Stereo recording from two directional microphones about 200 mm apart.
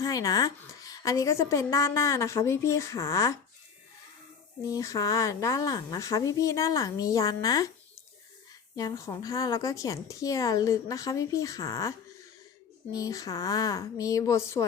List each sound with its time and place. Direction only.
0.0 s a woman's voice: 15° left (ahead or behind)
4.7 s a woman's voice: 15° left (ahead or behind)
8.7 s a woman's voice: 20° left (ahead or behind)